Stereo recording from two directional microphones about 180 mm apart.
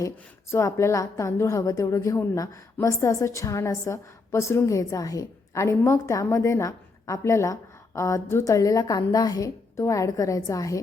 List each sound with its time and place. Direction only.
0.5 s a woman's voice: 15° left (ahead or behind)